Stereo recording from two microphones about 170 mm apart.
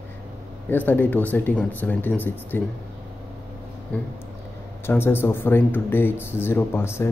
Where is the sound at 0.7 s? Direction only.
10° left (ahead or behind).